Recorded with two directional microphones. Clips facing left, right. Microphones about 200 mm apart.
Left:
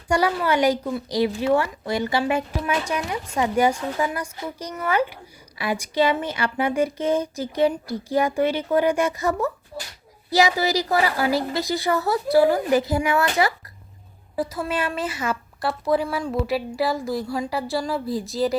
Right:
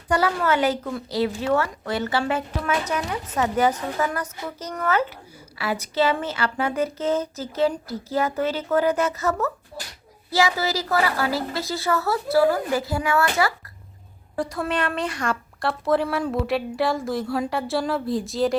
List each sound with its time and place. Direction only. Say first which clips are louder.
0.1 s a woman's voice: left 1 dB; 15° left (ahead or behind)
14.3 s a woman's voice: even; centre (ahead or behind)